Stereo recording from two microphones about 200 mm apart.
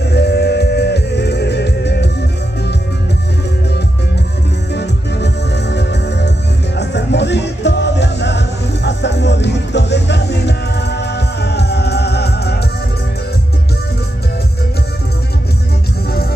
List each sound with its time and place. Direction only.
0.1 s music: 55° left (ahead or behind)
4.7 s music: 60° left (ahead or behind)